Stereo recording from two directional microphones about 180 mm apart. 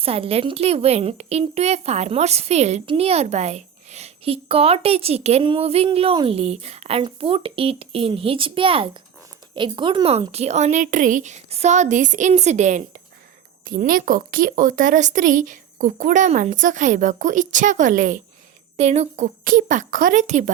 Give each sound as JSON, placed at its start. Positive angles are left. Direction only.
{"t": 0.0, "sound": "a woman's voice", "side_deg": -35}